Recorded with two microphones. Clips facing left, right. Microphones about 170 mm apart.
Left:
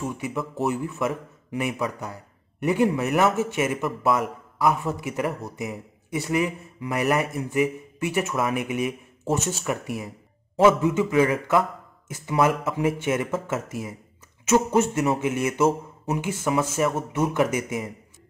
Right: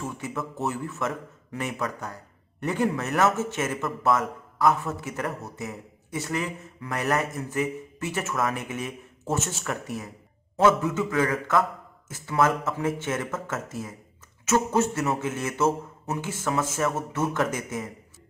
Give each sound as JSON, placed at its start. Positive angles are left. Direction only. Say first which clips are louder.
{"t": 0.0, "sound": "a man's voice", "louder": "left 3 dB", "side_deg": 15}